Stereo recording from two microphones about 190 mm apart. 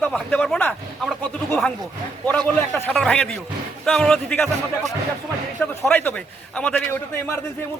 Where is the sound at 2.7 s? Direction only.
10° left (ahead or behind).